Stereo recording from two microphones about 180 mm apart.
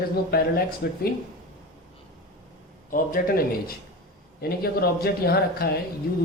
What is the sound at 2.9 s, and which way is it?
A man's voice, 50° left (ahead or behind).